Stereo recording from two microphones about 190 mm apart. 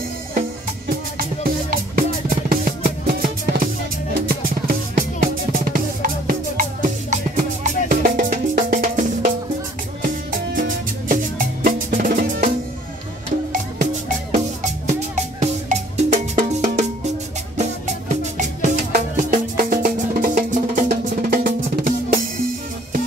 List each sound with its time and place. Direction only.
0.3 s music: 50° right (ahead or behind)
4.4 s drum: 50° right (ahead or behind)
10.0 s music: 45° right (ahead or behind)
13.5 s music: 40° right (ahead or behind)